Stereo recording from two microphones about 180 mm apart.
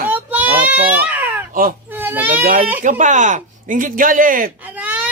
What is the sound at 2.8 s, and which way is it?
Speech, 45° right (ahead or behind).